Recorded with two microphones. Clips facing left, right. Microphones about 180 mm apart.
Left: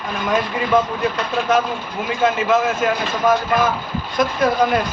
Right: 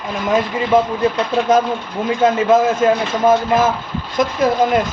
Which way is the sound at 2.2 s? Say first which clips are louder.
Right 4 dB; 30° right (ahead or behind).